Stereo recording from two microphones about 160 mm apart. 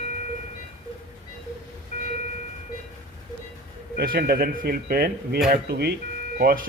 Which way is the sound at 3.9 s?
65° right (ahead or behind).